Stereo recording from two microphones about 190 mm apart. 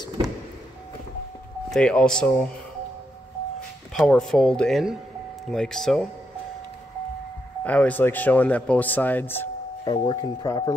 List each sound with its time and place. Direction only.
1.7 s speech: 5° left (ahead or behind)
3.9 s speech: 5° left (ahead or behind)
7.6 s speech: 5° left (ahead or behind)
9.8 s speech: 25° left (ahead or behind)